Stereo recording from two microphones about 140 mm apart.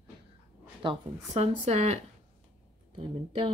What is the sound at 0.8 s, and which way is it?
A woman's voice, 50° right (ahead or behind).